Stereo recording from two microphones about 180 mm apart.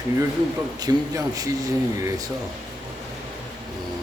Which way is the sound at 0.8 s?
20° right (ahead or behind).